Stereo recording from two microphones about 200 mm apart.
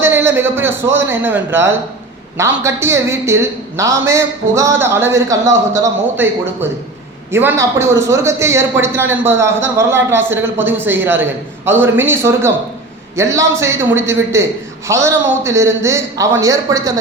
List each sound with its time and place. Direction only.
0.0 s a man's voice: 10° right (ahead or behind)